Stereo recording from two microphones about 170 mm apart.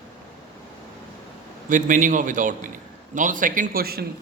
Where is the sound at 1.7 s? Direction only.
50° right (ahead or behind).